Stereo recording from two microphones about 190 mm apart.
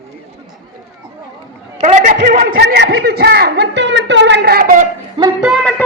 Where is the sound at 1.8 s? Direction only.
40° right (ahead or behind).